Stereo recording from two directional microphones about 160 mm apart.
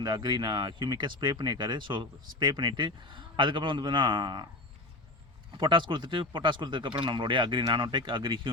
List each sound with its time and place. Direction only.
0.0 s speech: 30° right (ahead or behind)
5.5 s speech: 30° right (ahead or behind)